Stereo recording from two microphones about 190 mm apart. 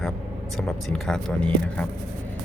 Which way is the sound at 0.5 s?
Centre (ahead or behind).